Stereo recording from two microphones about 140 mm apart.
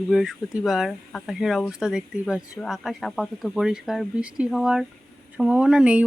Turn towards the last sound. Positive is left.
turn(degrees=-5)  # may be behind; listen again after turning